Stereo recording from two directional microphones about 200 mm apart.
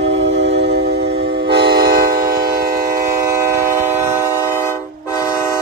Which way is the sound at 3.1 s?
15° right (ahead or behind).